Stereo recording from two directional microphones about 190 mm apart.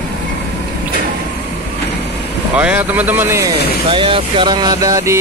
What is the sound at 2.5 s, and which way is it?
Speech, 10° right (ahead or behind).